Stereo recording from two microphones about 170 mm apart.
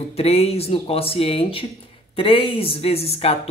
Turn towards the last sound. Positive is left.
turn(degrees=35)  # may be behind; listen again after turning